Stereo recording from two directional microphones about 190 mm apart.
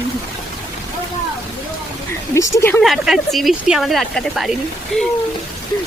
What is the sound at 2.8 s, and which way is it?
Speech, centre (ahead or behind).